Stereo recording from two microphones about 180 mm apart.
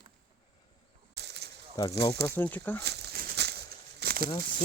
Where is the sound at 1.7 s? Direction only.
20° left (ahead or behind).